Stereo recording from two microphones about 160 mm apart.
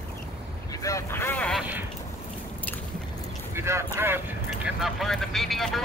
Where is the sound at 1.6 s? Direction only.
10° right (ahead or behind).